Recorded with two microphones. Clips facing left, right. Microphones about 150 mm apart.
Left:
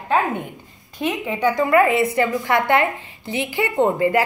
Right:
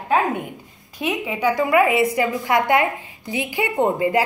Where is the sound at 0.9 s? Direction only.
5° right (ahead or behind).